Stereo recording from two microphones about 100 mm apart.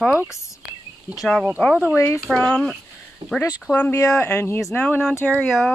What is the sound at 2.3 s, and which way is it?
Speech, 5° left (ahead or behind).